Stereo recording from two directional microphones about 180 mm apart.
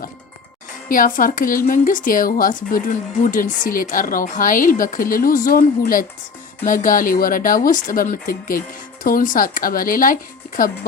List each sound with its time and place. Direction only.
0.9 s a woman's voice: 50° left (ahead or behind)